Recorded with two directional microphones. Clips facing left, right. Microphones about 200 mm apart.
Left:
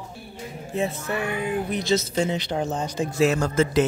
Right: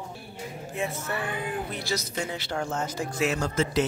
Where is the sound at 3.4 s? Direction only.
50° left (ahead or behind).